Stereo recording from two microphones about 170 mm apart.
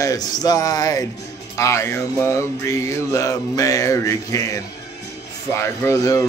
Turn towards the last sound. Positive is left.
turn(degrees=20)  # may be behind; listen again after turning